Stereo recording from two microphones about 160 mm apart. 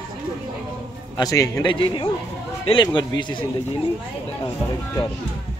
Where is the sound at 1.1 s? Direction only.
20° left (ahead or behind).